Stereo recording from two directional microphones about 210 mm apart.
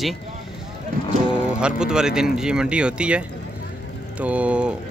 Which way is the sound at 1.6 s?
5° right (ahead or behind).